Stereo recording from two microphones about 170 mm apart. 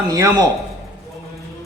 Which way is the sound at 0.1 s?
20° right (ahead or behind).